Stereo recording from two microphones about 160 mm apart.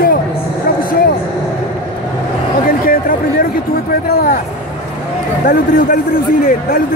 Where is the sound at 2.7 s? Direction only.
60° left (ahead or behind).